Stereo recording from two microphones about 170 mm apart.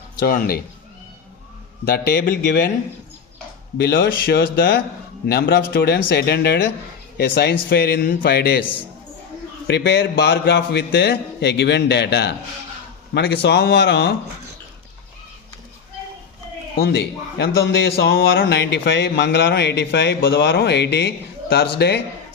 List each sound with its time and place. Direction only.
0.3 s a man's voice: 60° left (ahead or behind)
1.8 s a man's voice: 60° left (ahead or behind)
3.8 s a man's voice: 70° left (ahead or behind)
9.6 s a man's voice: 80° left
16.7 s a man's voice: 75° left (ahead or behind)